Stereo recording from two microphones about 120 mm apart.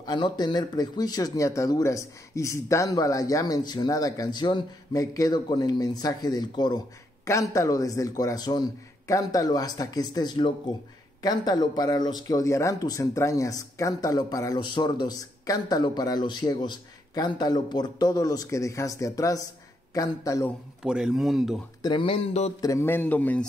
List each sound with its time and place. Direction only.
0.0 s speech: 35° left (ahead or behind)
7.2 s speech: 25° left (ahead or behind)
20.8 s speech: 5° right (ahead or behind)
21.8 s speech: 45° left (ahead or behind)
22.6 s a man's voice: 25° left (ahead or behind)